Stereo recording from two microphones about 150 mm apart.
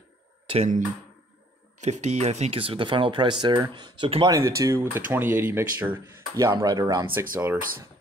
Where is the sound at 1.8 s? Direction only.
50° right (ahead or behind); by 4.3 s 35° right (ahead or behind).